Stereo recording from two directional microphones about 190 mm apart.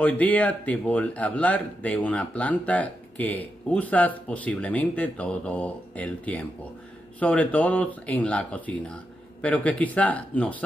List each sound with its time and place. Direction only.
0.0 s speech: 10° left (ahead or behind)